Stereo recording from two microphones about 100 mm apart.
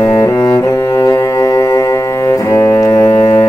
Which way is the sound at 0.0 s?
30° left (ahead or behind).